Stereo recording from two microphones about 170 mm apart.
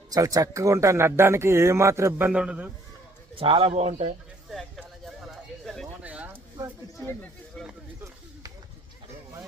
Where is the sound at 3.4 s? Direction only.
30° right (ahead or behind).